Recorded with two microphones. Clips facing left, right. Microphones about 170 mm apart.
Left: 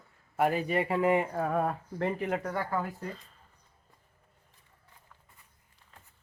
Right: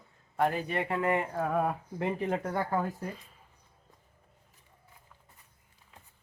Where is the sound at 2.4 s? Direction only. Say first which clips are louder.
Right 2 dB; 20° right (ahead or behind).